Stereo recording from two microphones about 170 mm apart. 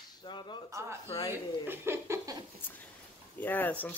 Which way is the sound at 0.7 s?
15° right (ahead or behind).